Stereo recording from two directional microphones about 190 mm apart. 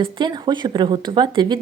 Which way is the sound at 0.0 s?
25° right (ahead or behind).